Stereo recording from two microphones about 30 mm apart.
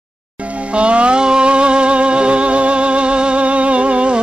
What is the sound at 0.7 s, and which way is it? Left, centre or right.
Music, right.